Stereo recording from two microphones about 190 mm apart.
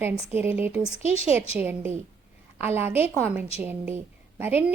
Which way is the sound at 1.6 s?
10° right (ahead or behind).